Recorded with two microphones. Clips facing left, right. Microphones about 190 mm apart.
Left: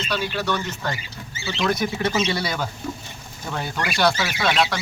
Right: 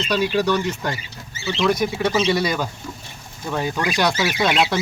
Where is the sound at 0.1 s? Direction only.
15° right (ahead or behind).